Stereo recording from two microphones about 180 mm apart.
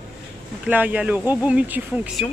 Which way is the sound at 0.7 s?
10° right (ahead or behind).